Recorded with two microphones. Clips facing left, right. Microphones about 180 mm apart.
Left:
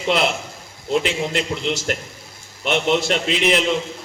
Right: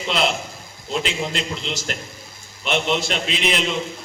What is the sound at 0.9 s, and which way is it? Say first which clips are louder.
A man's voice: left 4 dB; 60° left (ahead or behind).